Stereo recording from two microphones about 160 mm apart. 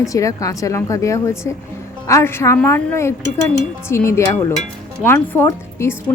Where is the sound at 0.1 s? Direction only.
20° left (ahead or behind).